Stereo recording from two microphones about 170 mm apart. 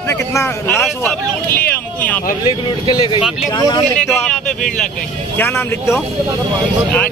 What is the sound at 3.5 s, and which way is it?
Speech, 25° left (ahead or behind).